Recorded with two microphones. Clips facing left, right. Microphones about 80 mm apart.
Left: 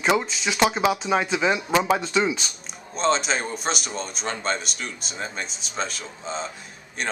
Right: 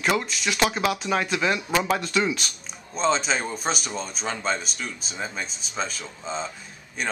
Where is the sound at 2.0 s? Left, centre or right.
Left.